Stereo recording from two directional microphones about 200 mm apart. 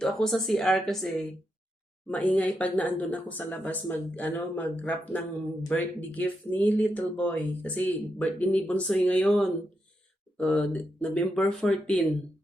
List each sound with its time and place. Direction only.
0.0 s speech: centre (ahead or behind)
2.0 s speech: 5° left (ahead or behind)